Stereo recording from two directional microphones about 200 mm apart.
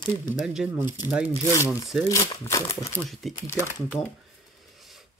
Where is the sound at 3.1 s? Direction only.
Centre (ahead or behind).